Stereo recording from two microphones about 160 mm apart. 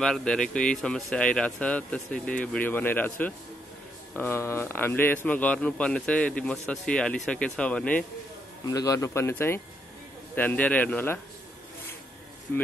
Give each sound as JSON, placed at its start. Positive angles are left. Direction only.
{"t": 0.0, "sound": "a man's voice", "side_deg": 5}
{"t": 8.6, "sound": "a man's voice", "side_deg": 20}
{"t": 12.5, "sound": "a man's voice", "side_deg": 10}